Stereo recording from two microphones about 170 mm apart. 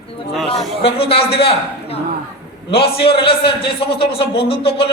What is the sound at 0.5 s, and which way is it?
A man's voice, 35° left (ahead or behind).